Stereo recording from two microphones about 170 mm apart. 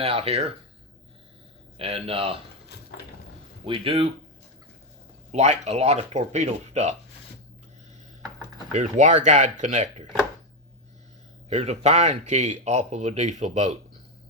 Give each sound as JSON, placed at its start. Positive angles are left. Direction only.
{"t": 0.0, "sound": "speech", "side_deg": -35}
{"t": 1.8, "sound": "speech", "side_deg": -35}
{"t": 3.7, "sound": "speech", "side_deg": -30}
{"t": 5.3, "sound": "speech", "side_deg": -40}
{"t": 8.7, "sound": "speech", "side_deg": -45}
{"t": 11.4, "sound": "speech", "side_deg": -40}